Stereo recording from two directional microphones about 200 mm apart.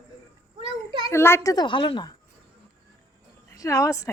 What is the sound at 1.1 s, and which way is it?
A woman's voice, 10° left (ahead or behind).